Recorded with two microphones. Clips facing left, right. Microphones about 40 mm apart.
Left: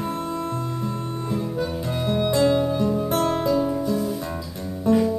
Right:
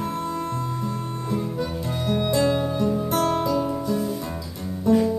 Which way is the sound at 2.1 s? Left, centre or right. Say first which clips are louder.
Left 2 dB; centre.